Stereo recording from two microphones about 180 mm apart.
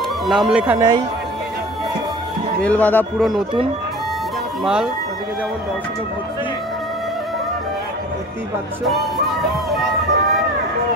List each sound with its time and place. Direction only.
0.3 s speech: 5° right (ahead or behind)
0.7 s speech: 25° right (ahead or behind)
2.6 s speech: 10° left (ahead or behind)